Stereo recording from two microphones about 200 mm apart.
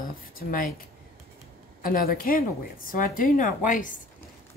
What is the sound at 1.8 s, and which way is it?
A woman's voice, 45° left (ahead or behind).